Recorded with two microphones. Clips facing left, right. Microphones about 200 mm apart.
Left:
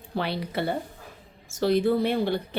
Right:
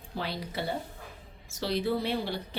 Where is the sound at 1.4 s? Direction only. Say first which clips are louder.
Left 8 dB; 50° left (ahead or behind).